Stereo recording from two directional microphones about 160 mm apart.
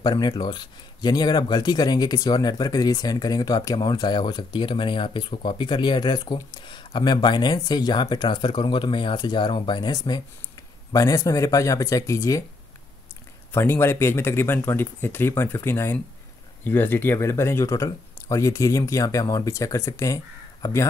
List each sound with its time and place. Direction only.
0.0 s speech: 25° left (ahead or behind)
13.5 s speech: 15° left (ahead or behind)